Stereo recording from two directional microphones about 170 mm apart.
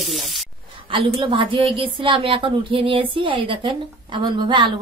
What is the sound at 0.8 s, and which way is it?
A woman's voice, 30° right (ahead or behind).